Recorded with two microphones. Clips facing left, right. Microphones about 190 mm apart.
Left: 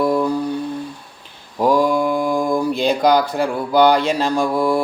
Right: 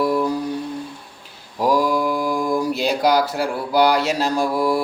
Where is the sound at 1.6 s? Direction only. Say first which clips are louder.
Left 3 dB; 5° right (ahead or behind).